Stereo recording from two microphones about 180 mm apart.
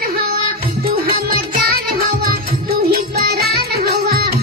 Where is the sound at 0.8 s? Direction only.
60° right (ahead or behind).